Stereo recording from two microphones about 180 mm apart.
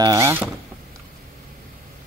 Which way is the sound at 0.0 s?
20° right (ahead or behind).